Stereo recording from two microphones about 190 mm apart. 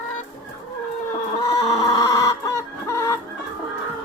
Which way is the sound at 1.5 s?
20° left (ahead or behind).